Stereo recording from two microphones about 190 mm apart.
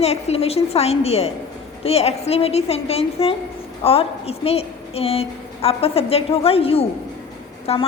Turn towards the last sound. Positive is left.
turn(degrees=30)  # may be behind; listen again after turning